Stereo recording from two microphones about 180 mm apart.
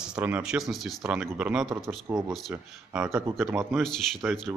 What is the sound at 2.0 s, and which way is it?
Speech, 20° right (ahead or behind).